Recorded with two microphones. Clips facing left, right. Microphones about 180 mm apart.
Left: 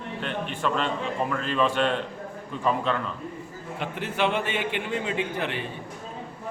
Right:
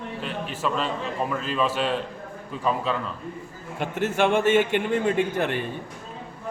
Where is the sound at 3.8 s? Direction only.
45° right (ahead or behind).